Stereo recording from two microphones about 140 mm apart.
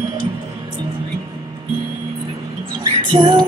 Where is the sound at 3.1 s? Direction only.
35° right (ahead or behind).